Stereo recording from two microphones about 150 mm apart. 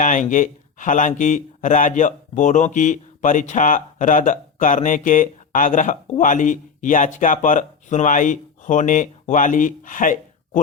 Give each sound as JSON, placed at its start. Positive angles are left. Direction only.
{"t": 0.0, "sound": "speech", "side_deg": 60}